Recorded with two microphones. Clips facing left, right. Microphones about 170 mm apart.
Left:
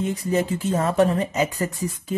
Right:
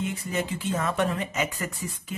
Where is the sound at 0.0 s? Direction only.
35° left (ahead or behind).